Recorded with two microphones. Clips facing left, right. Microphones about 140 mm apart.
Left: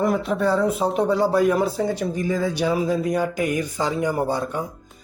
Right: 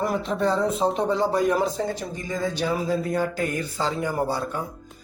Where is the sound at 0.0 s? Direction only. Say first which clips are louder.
Left 3 dB; 5° left (ahead or behind).